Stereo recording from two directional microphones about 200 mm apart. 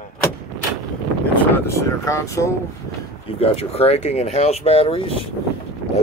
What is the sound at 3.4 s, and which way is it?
Speech, 30° left (ahead or behind).